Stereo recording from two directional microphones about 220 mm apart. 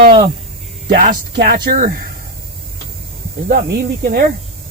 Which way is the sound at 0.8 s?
40° right (ahead or behind).